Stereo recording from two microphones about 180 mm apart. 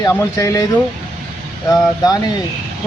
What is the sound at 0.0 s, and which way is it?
Speech, 20° left (ahead or behind).